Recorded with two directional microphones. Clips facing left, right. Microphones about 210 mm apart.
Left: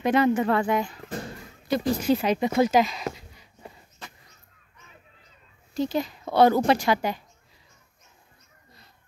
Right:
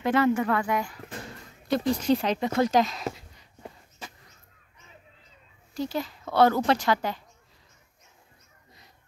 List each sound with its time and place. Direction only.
0.0 s speech: 15° left (ahead or behind)
1.7 s speech: 5° left (ahead or behind)
5.8 s a woman's voice: 20° left (ahead or behind)